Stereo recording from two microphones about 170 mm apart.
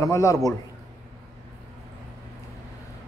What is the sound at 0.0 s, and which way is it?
Speech, 20° left (ahead or behind).